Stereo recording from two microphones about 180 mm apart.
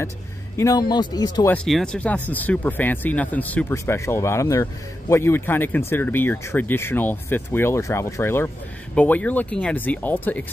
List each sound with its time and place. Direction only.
0.6 s speech: 20° left (ahead or behind)
1.5 s speech: 5° left (ahead or behind)